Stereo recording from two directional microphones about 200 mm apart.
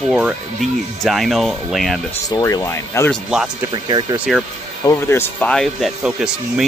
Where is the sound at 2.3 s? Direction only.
15° left (ahead or behind).